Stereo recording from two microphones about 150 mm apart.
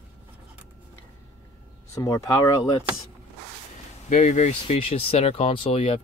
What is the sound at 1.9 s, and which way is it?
Speech, 20° left (ahead or behind).